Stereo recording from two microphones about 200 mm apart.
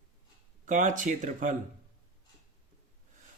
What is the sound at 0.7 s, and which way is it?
Speech, 40° right (ahead or behind).